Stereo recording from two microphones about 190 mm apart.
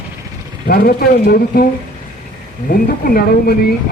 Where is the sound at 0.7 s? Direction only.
50° left (ahead or behind).